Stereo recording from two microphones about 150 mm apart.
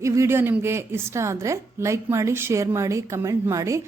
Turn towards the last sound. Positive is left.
turn(degrees=-20)  # may be behind; listen again after turning